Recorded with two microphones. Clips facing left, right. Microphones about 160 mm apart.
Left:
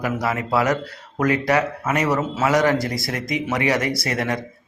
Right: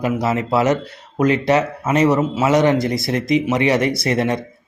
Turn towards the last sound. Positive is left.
turn(degrees=-25)  # may be behind; listen again after turning